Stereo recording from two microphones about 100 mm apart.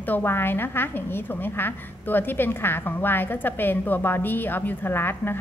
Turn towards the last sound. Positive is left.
turn(degrees=20)  # may be behind; listen again after turning